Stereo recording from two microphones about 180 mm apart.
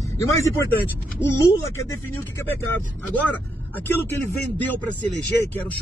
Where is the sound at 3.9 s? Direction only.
10° left (ahead or behind).